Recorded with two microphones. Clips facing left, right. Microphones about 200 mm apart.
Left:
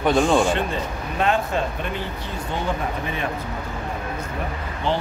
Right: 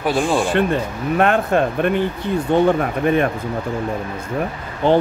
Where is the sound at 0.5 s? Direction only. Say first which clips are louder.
Right 5 dB; 60° right (ahead or behind).